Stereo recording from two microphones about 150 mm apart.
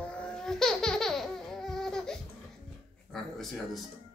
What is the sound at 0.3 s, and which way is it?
Laughter, 5° left (ahead or behind).